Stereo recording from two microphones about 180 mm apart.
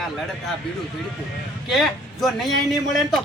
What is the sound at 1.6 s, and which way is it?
Speech, centre (ahead or behind).